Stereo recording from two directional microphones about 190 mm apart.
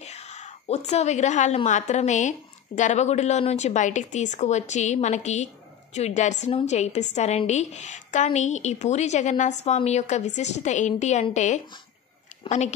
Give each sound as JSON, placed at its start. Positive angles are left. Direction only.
{"t": 0.0, "sound": "a woman's voice", "side_deg": 35}